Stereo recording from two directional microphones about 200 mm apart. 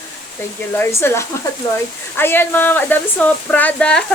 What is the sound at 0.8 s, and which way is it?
Speech, 10° left (ahead or behind).